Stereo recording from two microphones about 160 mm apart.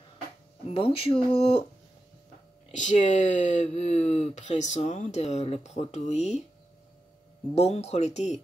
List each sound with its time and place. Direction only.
0.7 s speech: 35° left (ahead or behind)
2.7 s speech: 50° left (ahead or behind)
7.5 s speech: 40° left (ahead or behind)